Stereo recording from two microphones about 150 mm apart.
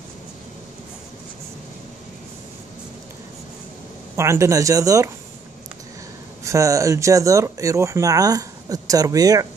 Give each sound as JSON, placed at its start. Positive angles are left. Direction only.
{"t": 4.2, "sound": "speech", "side_deg": -20}
{"t": 6.4, "sound": "speech", "side_deg": -20}